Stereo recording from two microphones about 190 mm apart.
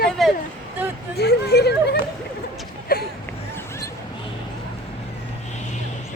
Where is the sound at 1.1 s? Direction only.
60° left (ahead or behind).